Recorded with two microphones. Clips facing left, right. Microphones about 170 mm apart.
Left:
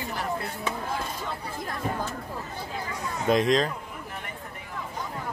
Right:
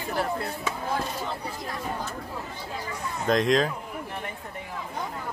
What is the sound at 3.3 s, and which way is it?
Speech, centre (ahead or behind).